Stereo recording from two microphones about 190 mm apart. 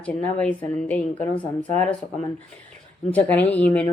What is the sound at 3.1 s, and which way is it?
Speech, 10° left (ahead or behind).